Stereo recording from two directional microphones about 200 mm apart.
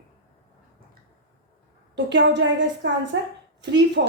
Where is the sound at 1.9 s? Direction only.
60° right (ahead or behind).